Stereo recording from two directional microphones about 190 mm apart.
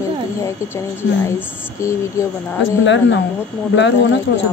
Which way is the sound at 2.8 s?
70° left (ahead or behind).